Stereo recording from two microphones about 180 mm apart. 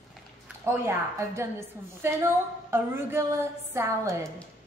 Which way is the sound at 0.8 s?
15° right (ahead or behind).